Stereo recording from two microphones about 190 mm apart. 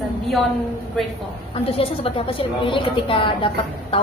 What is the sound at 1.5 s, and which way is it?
A woman's voice, 30° left (ahead or behind).